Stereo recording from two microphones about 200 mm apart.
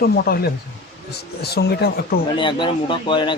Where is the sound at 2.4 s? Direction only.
25° left (ahead or behind).